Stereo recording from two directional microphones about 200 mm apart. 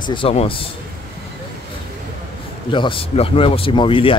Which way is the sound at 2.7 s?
25° left (ahead or behind).